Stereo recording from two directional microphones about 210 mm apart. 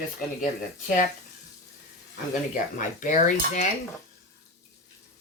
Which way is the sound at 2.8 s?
35° left (ahead or behind).